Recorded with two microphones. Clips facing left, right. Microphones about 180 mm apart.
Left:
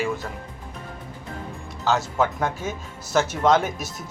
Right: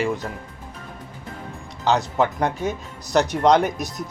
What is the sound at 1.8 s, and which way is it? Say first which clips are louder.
A man's voice: right 2 dB; 15° right (ahead or behind).